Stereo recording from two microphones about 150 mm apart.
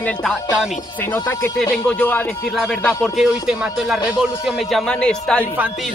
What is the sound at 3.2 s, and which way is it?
Speech, centre (ahead or behind).